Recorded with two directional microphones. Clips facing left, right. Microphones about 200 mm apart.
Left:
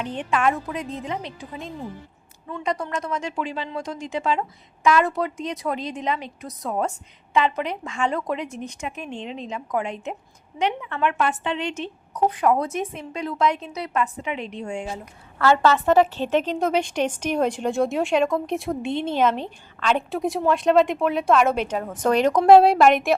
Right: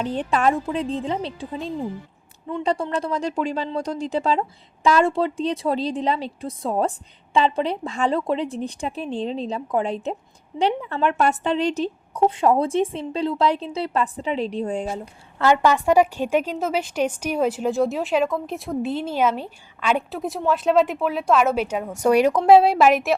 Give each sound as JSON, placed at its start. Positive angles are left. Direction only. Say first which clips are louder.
{"t": 0.0, "sound": "speech", "louder": "right 2 dB", "side_deg": -35}
{"t": 15.4, "sound": "a woman's voice", "louder": "even", "side_deg": -15}